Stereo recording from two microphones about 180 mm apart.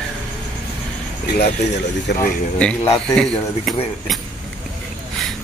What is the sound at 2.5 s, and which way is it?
A man's voice, 5° left (ahead or behind).